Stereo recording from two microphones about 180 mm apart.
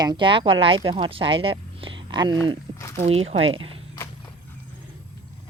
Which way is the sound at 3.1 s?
35° right (ahead or behind).